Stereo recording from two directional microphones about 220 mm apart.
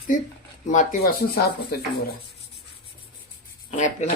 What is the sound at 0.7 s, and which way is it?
Speech, 35° left (ahead or behind).